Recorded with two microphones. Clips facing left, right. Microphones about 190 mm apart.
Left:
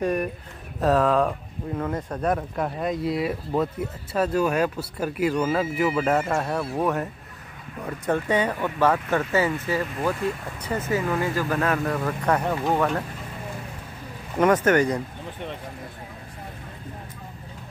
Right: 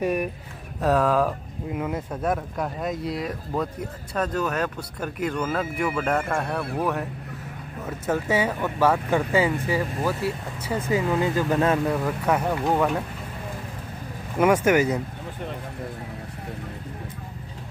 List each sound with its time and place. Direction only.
0.0 s speech: 10° right (ahead or behind)
11.9 s speech: 5° right (ahead or behind)
14.4 s speech: 10° right (ahead or behind)